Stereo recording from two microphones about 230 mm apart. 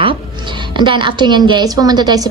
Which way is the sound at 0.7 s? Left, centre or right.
Right.